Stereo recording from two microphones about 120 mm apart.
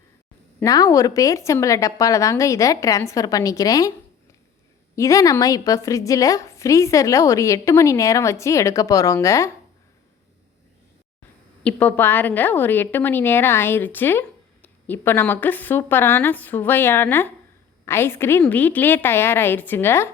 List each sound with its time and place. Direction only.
0.6 s a woman's voice: 30° left (ahead or behind)
4.9 s a woman's voice: 25° left (ahead or behind)
11.6 s a woman's voice: 15° left (ahead or behind)